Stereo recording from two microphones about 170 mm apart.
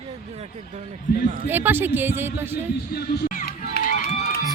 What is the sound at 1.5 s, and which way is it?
A man's voice, 10° right (ahead or behind).